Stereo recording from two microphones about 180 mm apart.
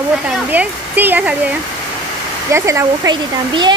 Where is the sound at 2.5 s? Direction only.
15° right (ahead or behind).